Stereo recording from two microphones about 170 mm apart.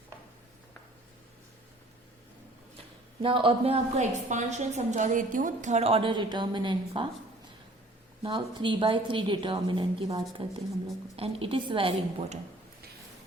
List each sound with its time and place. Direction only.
2.7 s a woman's voice: 30° right (ahead or behind)
8.2 s a woman's voice: 30° right (ahead or behind)